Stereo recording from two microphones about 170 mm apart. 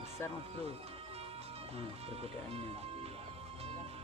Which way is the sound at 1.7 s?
35° right (ahead or behind).